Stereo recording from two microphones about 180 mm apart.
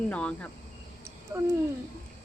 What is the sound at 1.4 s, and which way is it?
Child singing, 15° right (ahead or behind).